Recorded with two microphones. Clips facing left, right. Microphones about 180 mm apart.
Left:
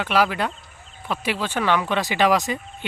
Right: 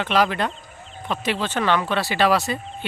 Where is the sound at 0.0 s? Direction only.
10° left (ahead or behind).